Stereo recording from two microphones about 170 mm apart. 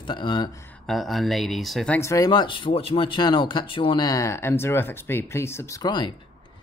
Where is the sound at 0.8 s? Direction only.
Centre (ahead or behind).